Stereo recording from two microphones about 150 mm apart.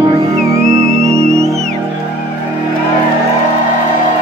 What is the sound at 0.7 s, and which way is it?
Music, 45° right (ahead or behind).